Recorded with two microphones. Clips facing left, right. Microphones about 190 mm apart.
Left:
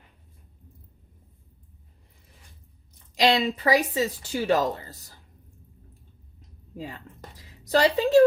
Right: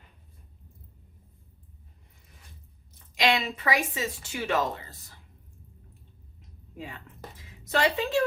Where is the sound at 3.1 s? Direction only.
35° left (ahead or behind).